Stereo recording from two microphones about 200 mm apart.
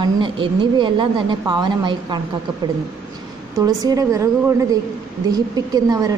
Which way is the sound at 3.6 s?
15° right (ahead or behind).